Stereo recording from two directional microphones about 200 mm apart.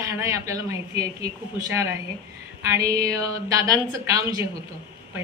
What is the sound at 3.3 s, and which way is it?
A woman's voice, 15° right (ahead or behind).